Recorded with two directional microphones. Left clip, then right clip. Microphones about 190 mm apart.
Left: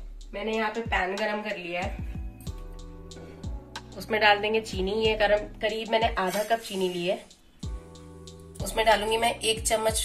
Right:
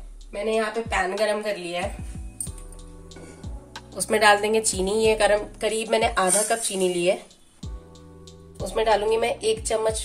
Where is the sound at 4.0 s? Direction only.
65° right (ahead or behind).